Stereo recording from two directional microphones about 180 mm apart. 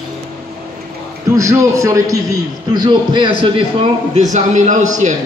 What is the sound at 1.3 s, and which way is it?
A man's voice, 15° right (ahead or behind).